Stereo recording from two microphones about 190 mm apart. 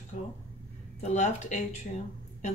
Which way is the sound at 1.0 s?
35° left (ahead or behind).